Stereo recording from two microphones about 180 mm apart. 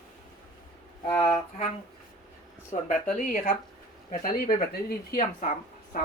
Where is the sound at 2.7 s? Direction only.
40° left (ahead or behind).